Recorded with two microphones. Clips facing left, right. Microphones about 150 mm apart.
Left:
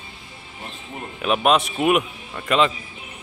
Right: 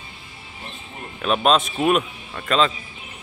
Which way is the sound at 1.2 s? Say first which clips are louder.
Even; 10° left (ahead or behind).